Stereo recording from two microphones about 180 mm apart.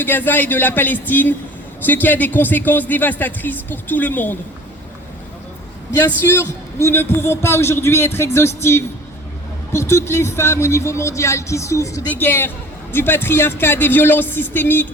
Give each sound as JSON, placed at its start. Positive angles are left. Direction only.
{"t": 0.0, "sound": "speech", "side_deg": 10}
{"t": 6.2, "sound": "speech", "side_deg": 15}